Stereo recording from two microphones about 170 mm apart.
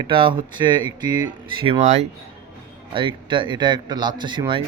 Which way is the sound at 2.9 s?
30° right (ahead or behind).